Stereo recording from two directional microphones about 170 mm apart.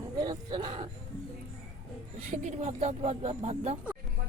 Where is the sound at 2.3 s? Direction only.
45° right (ahead or behind).